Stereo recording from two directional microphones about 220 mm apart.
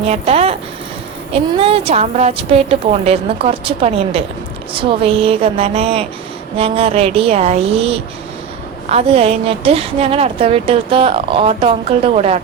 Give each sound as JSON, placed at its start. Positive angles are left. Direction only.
{"t": 0.0, "sound": "a woman's voice", "side_deg": -30}